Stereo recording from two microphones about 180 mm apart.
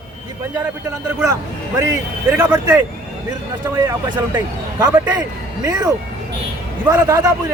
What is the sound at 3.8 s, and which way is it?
Speech, 20° right (ahead or behind).